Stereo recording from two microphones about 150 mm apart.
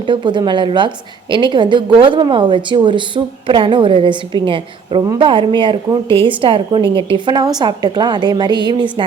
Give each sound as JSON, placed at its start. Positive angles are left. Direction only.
{"t": 0.0, "sound": "a woman's voice", "side_deg": -30}